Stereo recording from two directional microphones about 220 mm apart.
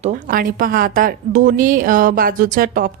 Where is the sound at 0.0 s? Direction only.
35° right (ahead or behind).